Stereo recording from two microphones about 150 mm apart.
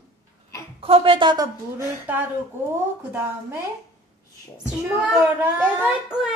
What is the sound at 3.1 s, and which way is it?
Speech, 15° right (ahead or behind).